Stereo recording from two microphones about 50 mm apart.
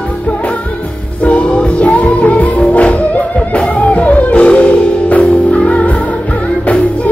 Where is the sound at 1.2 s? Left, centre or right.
Left.